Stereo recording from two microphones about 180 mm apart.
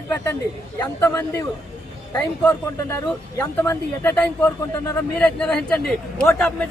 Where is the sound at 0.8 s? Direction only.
15° left (ahead or behind).